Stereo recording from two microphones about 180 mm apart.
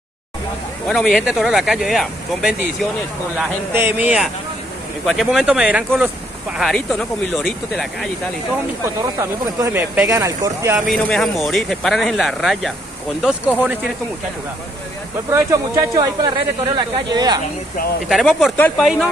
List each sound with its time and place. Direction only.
0.8 s speech: centre (ahead or behind)
3.3 s speech: 10° right (ahead or behind)
6.6 s speech: 5° left (ahead or behind)
9.6 s speech: 10° right (ahead or behind)
10.9 s speech: centre (ahead or behind)
15.3 s speech: 20° right (ahead or behind)
18.0 s speech: centre (ahead or behind)